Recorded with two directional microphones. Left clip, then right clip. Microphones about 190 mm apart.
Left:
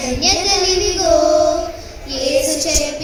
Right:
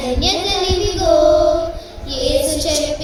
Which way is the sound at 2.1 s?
55° right (ahead or behind).